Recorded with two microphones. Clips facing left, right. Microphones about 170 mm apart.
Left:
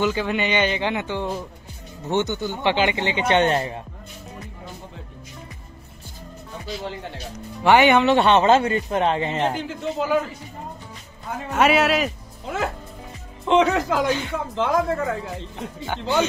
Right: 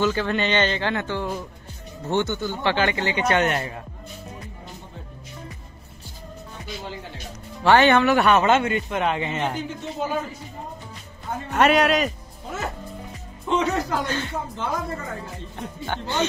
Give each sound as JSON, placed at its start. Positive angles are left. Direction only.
{"t": 0.0, "sound": "a man's voice", "side_deg": 15}
{"t": 7.6, "sound": "a man's voice", "side_deg": 15}
{"t": 8.1, "sound": "speech", "side_deg": 25}
{"t": 9.6, "sound": "speech", "side_deg": 90}
{"t": 11.5, "sound": "speech", "side_deg": 5}
{"t": 13.5, "sound": "speech", "side_deg": 90}
{"t": 14.0, "sound": "a man's voice", "side_deg": 10}
{"t": 14.5, "sound": "speech", "side_deg": 90}
{"t": 15.5, "sound": "speech", "side_deg": 5}